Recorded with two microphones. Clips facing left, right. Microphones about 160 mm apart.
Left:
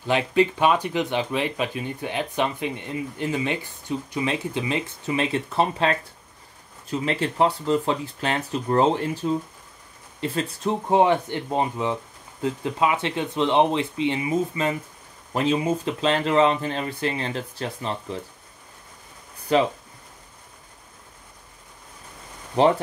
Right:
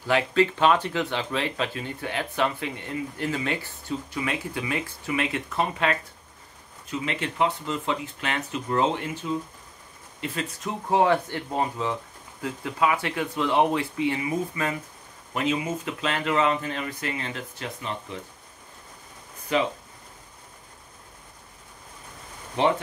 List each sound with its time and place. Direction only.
0.0 s speech: 20° left (ahead or behind)
19.5 s speech: 35° left (ahead or behind)
22.6 s speech: 35° left (ahead or behind)